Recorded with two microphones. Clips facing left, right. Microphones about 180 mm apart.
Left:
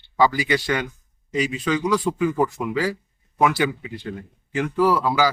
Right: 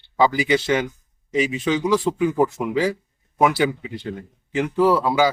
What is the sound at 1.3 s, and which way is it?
Speech, 20° right (ahead or behind).